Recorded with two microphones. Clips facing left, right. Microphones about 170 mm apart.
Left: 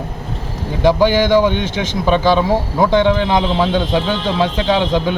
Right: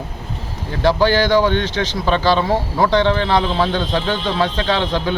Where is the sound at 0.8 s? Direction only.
15° left (ahead or behind).